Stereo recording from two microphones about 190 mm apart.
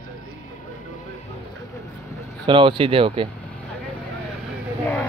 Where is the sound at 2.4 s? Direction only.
25° right (ahead or behind).